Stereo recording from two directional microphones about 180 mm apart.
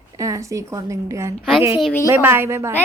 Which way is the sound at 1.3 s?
Centre (ahead or behind).